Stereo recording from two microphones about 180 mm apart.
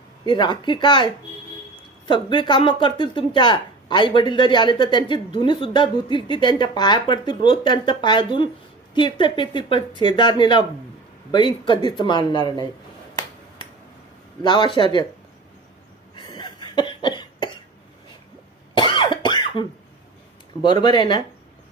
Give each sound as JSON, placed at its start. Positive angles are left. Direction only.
{"t": 0.3, "sound": "speech", "side_deg": 25}
{"t": 13.6, "sound": "a sound", "side_deg": 25}
{"t": 14.4, "sound": "speech", "side_deg": 25}
{"t": 16.1, "sound": "cough", "side_deg": 25}
{"t": 18.7, "sound": "cough", "side_deg": 25}
{"t": 20.6, "sound": "speech", "side_deg": 25}